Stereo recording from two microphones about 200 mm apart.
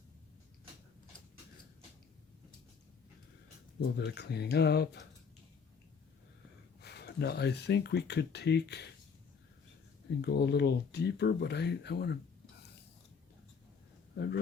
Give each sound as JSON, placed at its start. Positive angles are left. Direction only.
{"t": 3.9, "sound": "speech", "side_deg": 55}
{"t": 6.8, "sound": "speech", "side_deg": 55}
{"t": 10.2, "sound": "speech", "side_deg": 55}